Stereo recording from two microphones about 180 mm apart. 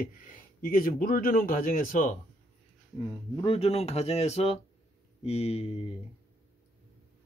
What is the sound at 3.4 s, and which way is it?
Speech, 35° left (ahead or behind).